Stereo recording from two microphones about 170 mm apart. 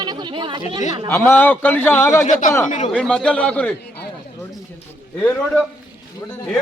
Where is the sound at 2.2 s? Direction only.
50° left (ahead or behind).